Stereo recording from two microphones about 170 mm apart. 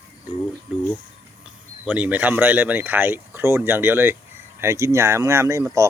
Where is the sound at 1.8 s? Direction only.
10° right (ahead or behind).